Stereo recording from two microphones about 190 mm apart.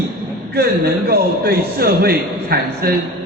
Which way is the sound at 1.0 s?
55° right (ahead or behind).